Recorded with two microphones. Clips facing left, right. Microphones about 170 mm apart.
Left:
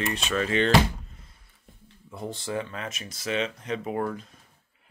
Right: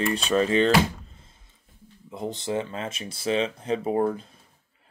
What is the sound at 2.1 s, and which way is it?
Speech, 20° right (ahead or behind).